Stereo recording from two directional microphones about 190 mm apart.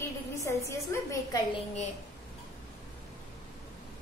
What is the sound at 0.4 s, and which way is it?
A woman's voice, 15° left (ahead or behind).